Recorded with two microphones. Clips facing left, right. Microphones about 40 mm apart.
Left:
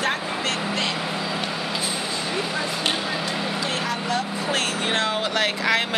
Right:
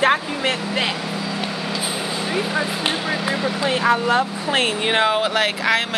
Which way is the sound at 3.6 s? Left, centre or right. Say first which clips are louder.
Right 8 dB; right.